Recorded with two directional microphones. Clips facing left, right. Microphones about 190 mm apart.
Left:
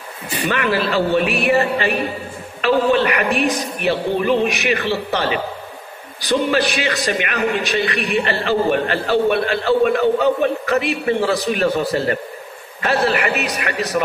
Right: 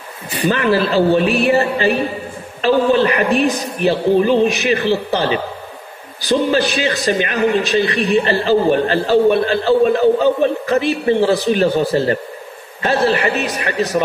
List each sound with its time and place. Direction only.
0.5 s a man's voice: 30° right (ahead or behind)